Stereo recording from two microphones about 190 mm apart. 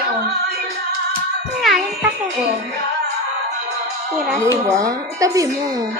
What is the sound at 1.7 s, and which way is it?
Music, centre (ahead or behind).